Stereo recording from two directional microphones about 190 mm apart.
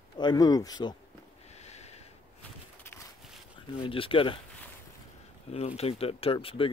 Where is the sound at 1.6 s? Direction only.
35° left (ahead or behind).